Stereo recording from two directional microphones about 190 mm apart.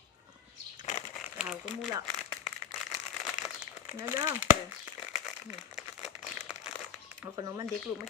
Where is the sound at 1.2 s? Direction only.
Centre (ahead or behind).